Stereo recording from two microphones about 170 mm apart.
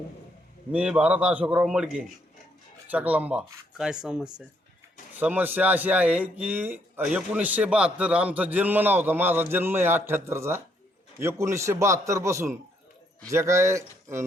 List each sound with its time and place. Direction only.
0.7 s a man's voice: 10° right (ahead or behind)